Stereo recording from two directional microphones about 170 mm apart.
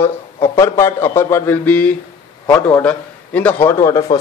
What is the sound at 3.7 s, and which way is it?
Speech, 20° left (ahead or behind).